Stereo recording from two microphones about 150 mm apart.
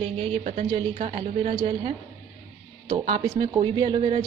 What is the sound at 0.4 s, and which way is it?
Speech, 60° right (ahead or behind).